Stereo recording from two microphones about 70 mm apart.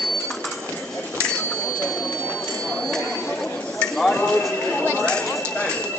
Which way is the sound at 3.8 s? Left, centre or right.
Centre.